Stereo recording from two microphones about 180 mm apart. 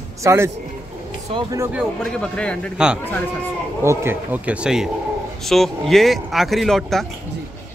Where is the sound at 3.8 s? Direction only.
15° right (ahead or behind); by 7.0 s centre (ahead or behind).